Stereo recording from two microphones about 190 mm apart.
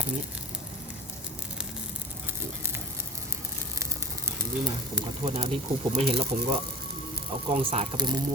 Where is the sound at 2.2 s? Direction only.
10° right (ahead or behind).